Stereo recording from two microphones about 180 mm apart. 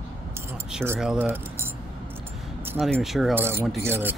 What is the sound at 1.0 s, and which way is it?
Speech, 5° right (ahead or behind).